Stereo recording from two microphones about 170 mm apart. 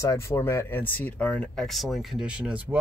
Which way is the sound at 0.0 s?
15° left (ahead or behind).